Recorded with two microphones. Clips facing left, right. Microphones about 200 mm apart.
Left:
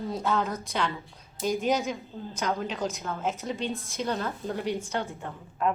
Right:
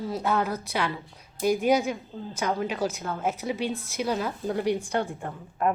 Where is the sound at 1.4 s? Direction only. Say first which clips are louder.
Right 4 dB; 10° right (ahead or behind).